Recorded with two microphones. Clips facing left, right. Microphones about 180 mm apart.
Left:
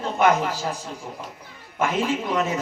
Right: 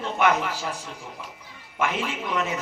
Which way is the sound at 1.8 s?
40° left (ahead or behind).